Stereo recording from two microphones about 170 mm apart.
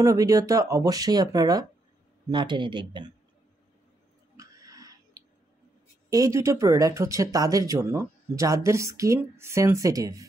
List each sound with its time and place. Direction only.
0.0 s speech: 20° right (ahead or behind)
4.4 s a sound: 20° right (ahead or behind)
6.0 s speech: 20° right (ahead or behind)